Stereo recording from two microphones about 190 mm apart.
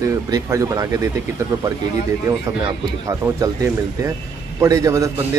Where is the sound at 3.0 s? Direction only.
15° right (ahead or behind).